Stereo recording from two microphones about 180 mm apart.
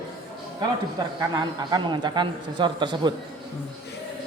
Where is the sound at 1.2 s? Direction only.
20° right (ahead or behind).